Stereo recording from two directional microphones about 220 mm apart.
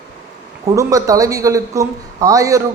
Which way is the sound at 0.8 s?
15° right (ahead or behind).